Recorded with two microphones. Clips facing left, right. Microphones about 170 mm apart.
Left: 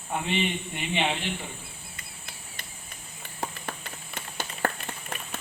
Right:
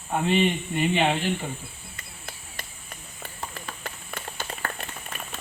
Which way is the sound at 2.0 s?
45° right (ahead or behind).